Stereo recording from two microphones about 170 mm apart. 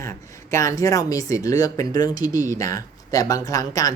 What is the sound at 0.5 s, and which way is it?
Speech, 20° left (ahead or behind).